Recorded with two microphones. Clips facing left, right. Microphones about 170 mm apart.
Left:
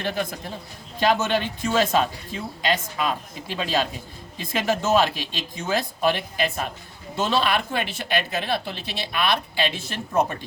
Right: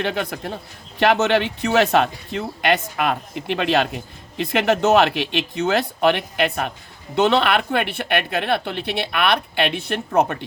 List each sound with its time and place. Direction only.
0.0 s speech: 65° right (ahead or behind)